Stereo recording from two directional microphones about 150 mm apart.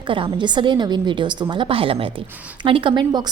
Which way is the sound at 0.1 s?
35° right (ahead or behind).